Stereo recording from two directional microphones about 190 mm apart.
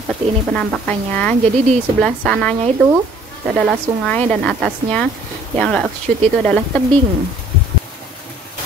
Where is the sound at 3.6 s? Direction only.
Centre (ahead or behind).